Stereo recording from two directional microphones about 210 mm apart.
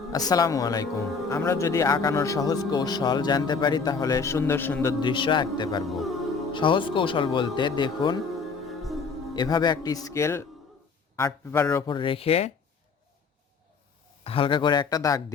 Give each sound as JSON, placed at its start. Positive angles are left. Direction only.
{"t": 0.1, "sound": "speech", "side_deg": 15}
{"t": 5.9, "sound": "speech", "side_deg": 0}
{"t": 6.5, "sound": "speech", "side_deg": 25}
{"t": 8.6, "sound": "music", "side_deg": 0}
{"t": 9.3, "sound": "speech", "side_deg": 20}
{"t": 14.3, "sound": "speech", "side_deg": 25}